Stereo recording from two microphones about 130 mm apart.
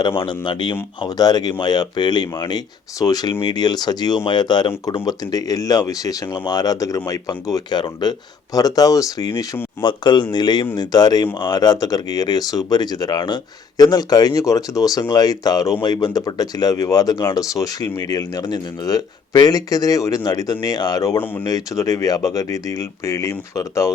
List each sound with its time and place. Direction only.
0.0 s speech: 35° left (ahead or behind)